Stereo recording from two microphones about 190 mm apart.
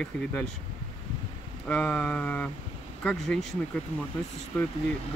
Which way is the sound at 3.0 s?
5° left (ahead or behind).